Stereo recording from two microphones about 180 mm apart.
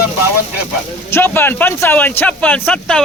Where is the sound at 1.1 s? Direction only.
10° left (ahead or behind).